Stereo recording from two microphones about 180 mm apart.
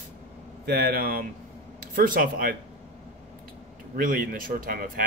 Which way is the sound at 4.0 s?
50° right (ahead or behind).